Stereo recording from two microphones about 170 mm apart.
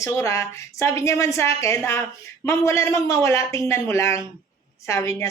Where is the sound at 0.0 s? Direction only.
15° left (ahead or behind).